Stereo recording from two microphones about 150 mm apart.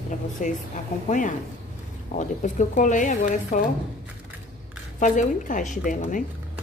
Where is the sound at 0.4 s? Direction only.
60° left (ahead or behind).